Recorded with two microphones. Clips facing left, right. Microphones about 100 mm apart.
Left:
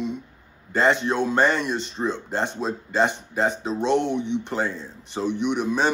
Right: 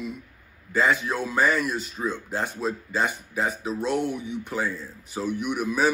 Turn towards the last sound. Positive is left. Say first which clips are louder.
# left 2 dB
turn(degrees=-5)  # may be behind; listen again after turning